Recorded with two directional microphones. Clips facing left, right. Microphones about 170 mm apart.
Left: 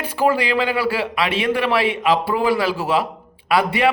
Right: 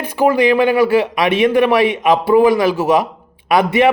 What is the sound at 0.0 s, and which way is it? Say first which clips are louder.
A man's voice: right 5 dB; 20° right (ahead or behind).